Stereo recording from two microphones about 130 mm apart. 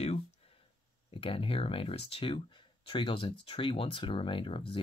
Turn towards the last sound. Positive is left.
turn(degrees=45)  # may be behind; listen again after turning